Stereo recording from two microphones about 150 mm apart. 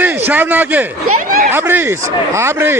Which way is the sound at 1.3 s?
60° right (ahead or behind).